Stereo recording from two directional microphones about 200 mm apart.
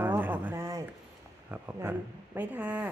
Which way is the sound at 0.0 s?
10° right (ahead or behind).